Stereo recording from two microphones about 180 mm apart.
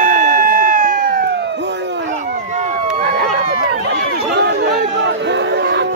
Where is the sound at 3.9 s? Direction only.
65° right (ahead or behind).